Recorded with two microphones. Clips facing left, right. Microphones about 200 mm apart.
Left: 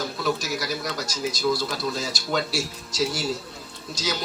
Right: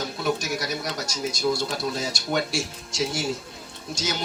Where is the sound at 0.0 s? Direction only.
25° right (ahead or behind).